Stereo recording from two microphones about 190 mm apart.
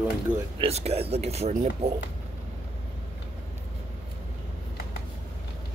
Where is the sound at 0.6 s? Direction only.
35° right (ahead or behind).